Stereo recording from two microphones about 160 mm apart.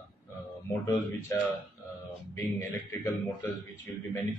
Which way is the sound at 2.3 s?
15° left (ahead or behind).